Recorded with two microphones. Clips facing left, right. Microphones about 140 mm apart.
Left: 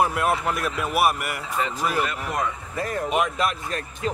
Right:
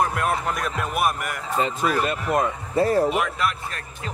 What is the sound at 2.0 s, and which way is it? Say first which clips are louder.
Speech: right 5 dB; 30° right (ahead or behind).